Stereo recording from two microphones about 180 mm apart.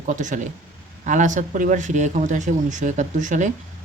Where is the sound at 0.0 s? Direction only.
45° right (ahead or behind).